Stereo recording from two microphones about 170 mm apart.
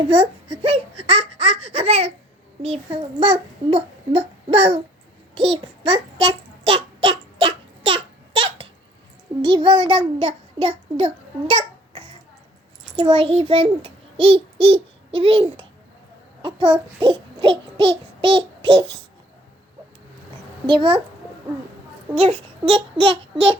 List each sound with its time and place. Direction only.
0.6 s a child's voice: 35° right (ahead or behind)
5.3 s child singing: 30° right (ahead or behind)
9.4 s a child's voice: 30° right (ahead or behind)
17.0 s child singing: 30° right (ahead or behind)
20.7 s a child's voice: 30° right (ahead or behind)
22.1 s a child's voice: 35° right (ahead or behind)